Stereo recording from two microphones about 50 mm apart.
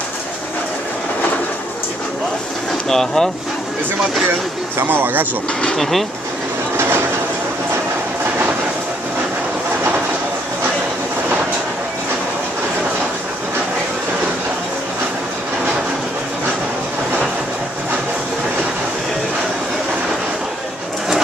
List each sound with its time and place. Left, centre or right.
2.9 s speech: centre
4.7 s speech: right
5.8 s speech: centre